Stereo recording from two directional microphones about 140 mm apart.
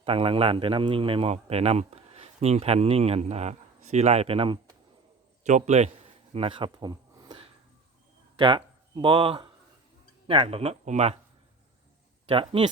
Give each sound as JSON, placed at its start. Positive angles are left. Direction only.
{"t": 0.0, "sound": "speech", "side_deg": -40}
{"t": 5.4, "sound": "a man's voice", "side_deg": -60}
{"t": 6.3, "sound": "speech", "side_deg": -40}
{"t": 8.4, "sound": "speech", "side_deg": -35}
{"t": 12.2, "sound": "speech", "side_deg": -45}